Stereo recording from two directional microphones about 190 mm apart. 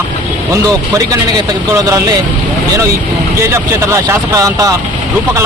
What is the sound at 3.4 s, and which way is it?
Speech, 15° right (ahead or behind).